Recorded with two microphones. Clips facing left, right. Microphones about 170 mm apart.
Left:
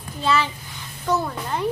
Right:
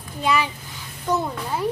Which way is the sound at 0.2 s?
15° right (ahead or behind).